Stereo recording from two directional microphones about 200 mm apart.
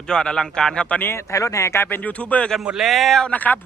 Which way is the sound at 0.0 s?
5° left (ahead or behind).